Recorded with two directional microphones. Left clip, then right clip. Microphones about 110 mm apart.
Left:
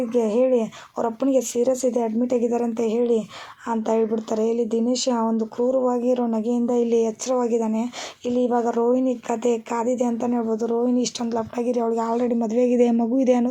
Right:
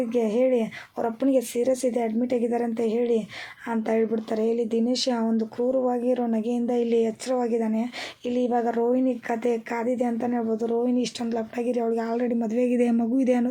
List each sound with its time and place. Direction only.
0.1 s speech: 40° left (ahead or behind)
12.5 s speech: 15° left (ahead or behind)